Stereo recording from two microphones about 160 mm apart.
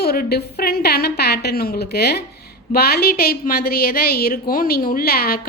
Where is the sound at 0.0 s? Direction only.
75° left (ahead or behind).